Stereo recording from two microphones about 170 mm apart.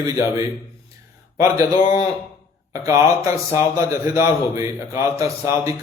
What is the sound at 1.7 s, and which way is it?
Speech, 35° left (ahead or behind).